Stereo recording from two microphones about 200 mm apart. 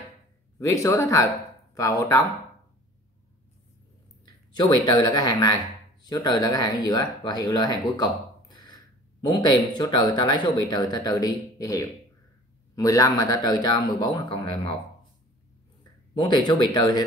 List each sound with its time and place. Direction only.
0.6 s speech: 15° left (ahead or behind)
4.6 s speech: 20° left (ahead or behind)
15.8 s speech: 20° left (ahead or behind)